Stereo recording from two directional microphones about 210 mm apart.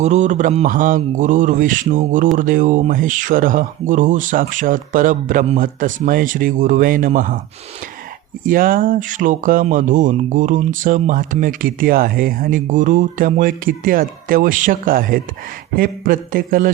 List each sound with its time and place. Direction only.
0.0 s speech: 35° right (ahead or behind)
8.4 s speech: 40° right (ahead or behind)